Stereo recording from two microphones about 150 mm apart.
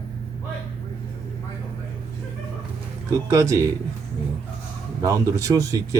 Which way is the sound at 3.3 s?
20° right (ahead or behind).